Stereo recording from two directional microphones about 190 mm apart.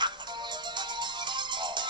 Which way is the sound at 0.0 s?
25° right (ahead or behind).